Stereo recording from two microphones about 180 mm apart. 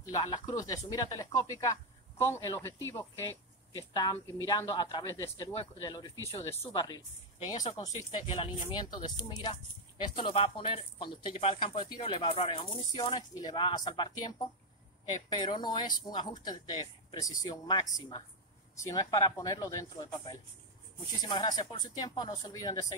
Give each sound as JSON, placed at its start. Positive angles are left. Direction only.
{"t": 0.1, "sound": "speech", "side_deg": 20}
{"t": 3.9, "sound": "speech", "side_deg": 20}